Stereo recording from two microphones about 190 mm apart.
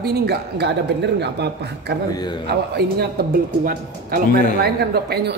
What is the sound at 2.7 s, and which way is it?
Speech, 55° right (ahead or behind).